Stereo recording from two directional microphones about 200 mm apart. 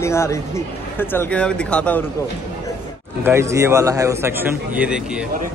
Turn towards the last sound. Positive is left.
turn(degrees=-5)  # may be behind; listen again after turning